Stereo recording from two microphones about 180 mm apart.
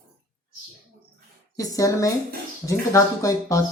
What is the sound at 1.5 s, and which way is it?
Speech, 20° left (ahead or behind).